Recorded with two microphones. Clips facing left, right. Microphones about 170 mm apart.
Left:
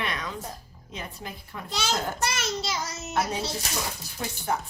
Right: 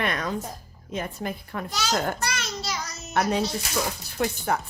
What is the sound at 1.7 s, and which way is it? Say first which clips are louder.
A child's voice: right 2 dB; 25° left (ahead or behind).